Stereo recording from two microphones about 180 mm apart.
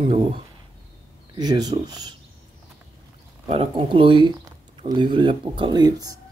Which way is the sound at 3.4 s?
30° right (ahead or behind).